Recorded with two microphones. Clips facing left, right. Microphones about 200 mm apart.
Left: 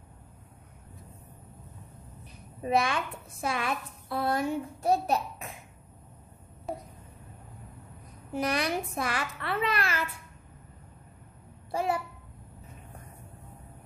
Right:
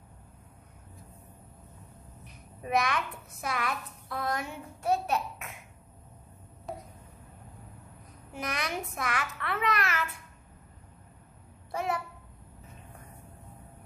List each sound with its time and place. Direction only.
2.6 s a woman's voice: 30° left (ahead or behind)
6.7 s a sound: centre (ahead or behind)
8.3 s a woman's voice: 35° left (ahead or behind)
11.7 s a child's voice: 30° left (ahead or behind)